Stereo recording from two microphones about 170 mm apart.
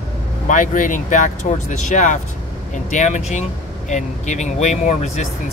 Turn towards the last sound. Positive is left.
turn(degrees=45)  # may be behind; listen again after turning